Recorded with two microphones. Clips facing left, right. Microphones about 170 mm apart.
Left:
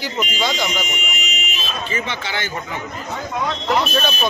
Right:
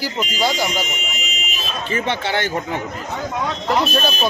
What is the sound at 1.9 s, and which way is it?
Speech, 55° right (ahead or behind).